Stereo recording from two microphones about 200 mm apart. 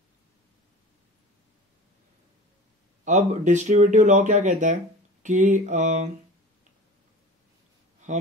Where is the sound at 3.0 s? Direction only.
35° right (ahead or behind).